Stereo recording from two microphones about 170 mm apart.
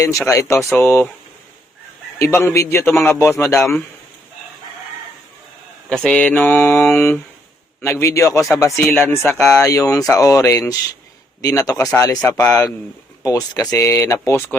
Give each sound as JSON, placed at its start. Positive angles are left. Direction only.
{"t": 0.0, "sound": "a man's voice", "side_deg": 20}
{"t": 2.1, "sound": "a man's voice", "side_deg": 15}
{"t": 5.9, "sound": "a man's voice", "side_deg": 5}